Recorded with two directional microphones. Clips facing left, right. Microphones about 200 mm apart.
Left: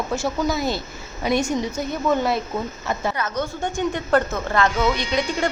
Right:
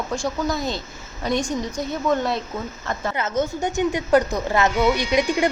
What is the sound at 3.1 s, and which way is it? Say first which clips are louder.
A woman's voice: right 3 dB; 20° right (ahead or behind).